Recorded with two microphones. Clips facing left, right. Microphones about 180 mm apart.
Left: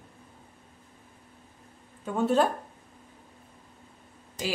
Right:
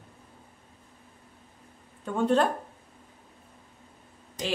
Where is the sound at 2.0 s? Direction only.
5° left (ahead or behind).